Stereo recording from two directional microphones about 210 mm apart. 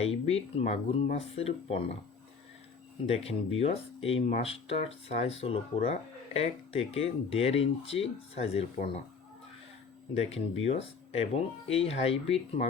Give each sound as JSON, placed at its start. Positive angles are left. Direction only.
{"t": 0.0, "sound": "speech", "side_deg": 30}
{"t": 3.6, "sound": "speech", "side_deg": 30}
{"t": 10.2, "sound": "speech", "side_deg": 30}